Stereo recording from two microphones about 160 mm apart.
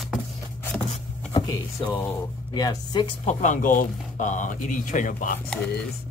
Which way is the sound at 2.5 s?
25° left (ahead or behind).